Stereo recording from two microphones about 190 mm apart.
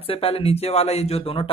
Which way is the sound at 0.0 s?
30° left (ahead or behind).